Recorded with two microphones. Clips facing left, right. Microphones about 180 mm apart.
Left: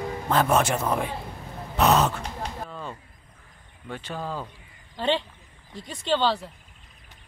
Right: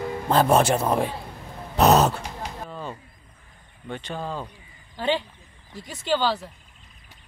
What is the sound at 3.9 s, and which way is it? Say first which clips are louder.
Speech: right 1 dB; 5° left (ahead or behind).